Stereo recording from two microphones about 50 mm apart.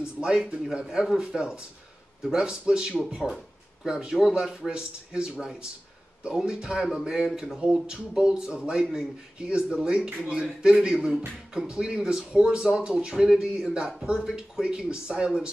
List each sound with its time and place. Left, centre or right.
0.2 s speech: centre